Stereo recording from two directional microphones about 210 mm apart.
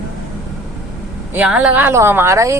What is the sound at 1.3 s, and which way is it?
Speech, 5° right (ahead or behind).